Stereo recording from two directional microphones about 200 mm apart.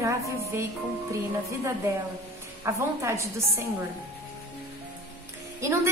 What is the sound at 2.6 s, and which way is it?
A woman's voice, 15° right (ahead or behind).